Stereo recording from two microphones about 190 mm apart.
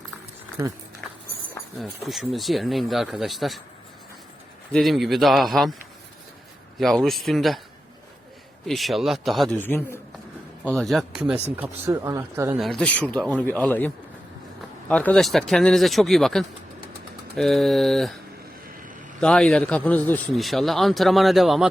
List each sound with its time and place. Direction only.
0.6 s speech: 20° right (ahead or behind)
1.8 s a man's voice: centre (ahead or behind)
4.7 s a man's voice: centre (ahead or behind)
6.7 s a man's voice: centre (ahead or behind)
8.6 s a man's voice: centre (ahead or behind)
9.6 s speech: 10° left (ahead or behind)
10.7 s a man's voice: centre (ahead or behind)
12.5 s a man's voice: centre (ahead or behind)
19.2 s a man's voice: 5° left (ahead or behind)